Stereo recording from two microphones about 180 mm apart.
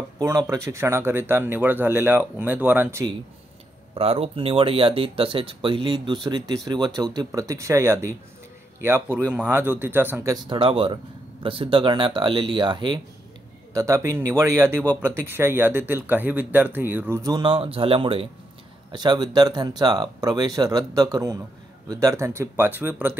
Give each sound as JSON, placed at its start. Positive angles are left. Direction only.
{"t": 0.2, "sound": "speech", "side_deg": -20}
{"t": 3.9, "sound": "speech", "side_deg": -35}
{"t": 10.3, "sound": "speech", "side_deg": -25}